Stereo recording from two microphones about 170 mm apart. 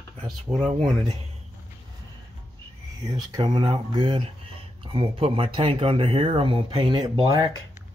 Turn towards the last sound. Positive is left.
turn(degrees=-30)  # may be behind; listen again after turning